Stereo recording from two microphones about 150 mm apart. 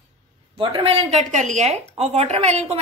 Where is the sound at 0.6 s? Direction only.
35° right (ahead or behind).